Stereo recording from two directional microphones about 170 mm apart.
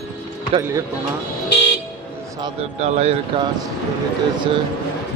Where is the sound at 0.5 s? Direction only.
30° right (ahead or behind).